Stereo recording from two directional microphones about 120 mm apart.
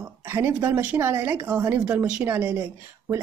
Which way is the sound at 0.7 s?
20° right (ahead or behind).